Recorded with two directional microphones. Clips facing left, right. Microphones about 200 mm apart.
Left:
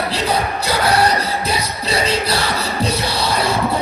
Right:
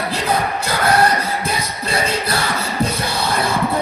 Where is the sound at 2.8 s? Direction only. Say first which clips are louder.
Even; 50° right (ahead or behind).